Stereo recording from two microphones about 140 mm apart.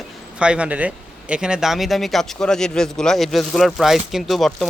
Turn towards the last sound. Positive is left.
turn(degrees=0)  # may be behind; listen again after turning